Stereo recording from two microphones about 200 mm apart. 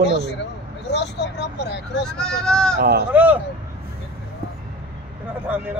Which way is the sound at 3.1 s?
10° right (ahead or behind).